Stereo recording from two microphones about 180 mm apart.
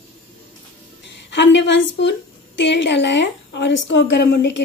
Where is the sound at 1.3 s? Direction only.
80° left.